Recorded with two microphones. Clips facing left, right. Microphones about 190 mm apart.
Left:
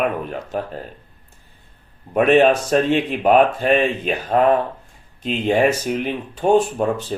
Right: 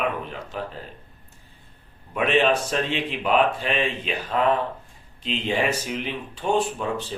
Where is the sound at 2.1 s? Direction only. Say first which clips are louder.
Left 7 dB; 50° left (ahead or behind).